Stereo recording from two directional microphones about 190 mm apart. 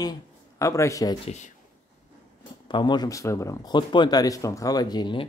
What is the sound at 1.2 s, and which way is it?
Speech, 35° left (ahead or behind).